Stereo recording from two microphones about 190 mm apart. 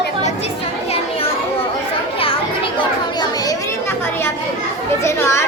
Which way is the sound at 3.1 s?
20° left (ahead or behind).